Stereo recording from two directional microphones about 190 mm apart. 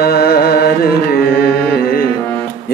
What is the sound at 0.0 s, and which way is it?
Carnatic music, 55° left (ahead or behind).